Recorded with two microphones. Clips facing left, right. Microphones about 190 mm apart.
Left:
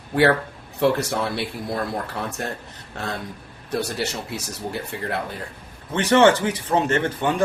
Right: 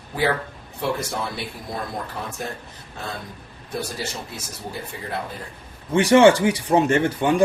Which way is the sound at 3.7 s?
70° left (ahead or behind).